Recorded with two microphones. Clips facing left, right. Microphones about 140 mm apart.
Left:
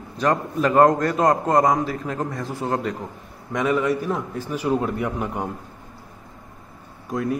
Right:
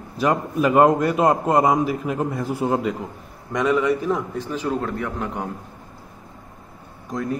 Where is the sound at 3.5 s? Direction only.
Centre (ahead or behind).